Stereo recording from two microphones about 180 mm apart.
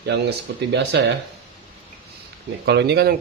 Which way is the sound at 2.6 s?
65° right (ahead or behind).